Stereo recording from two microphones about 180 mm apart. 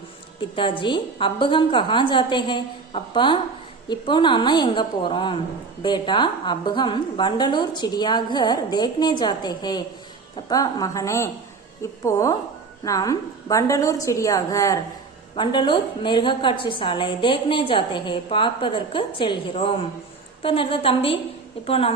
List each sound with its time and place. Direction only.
0.5 s a woman's voice: 30° left (ahead or behind)